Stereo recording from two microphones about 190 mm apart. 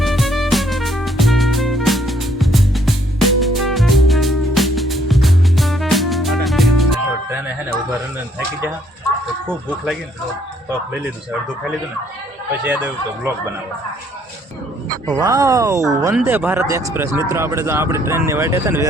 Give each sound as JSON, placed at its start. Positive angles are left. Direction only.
{"t": 0.0, "sound": "music", "side_deg": 0}
{"t": 15.0, "sound": "speech", "side_deg": -20}